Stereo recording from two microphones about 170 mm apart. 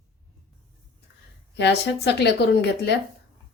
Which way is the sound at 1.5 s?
85° left.